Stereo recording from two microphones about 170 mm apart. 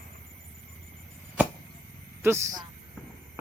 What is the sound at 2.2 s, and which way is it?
Speech, 15° right (ahead or behind).